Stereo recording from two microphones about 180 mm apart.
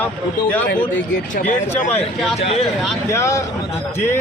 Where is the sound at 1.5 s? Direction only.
40° left (ahead or behind).